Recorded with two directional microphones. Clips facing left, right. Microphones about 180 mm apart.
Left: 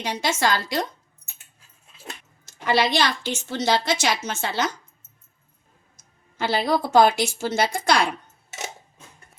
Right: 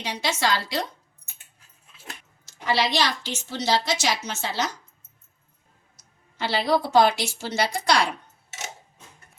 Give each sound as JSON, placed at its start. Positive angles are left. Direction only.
{"t": 0.0, "sound": "a woman's voice", "side_deg": 50}
{"t": 2.5, "sound": "a woman's voice", "side_deg": 55}
{"t": 6.0, "sound": "a woman's voice", "side_deg": 50}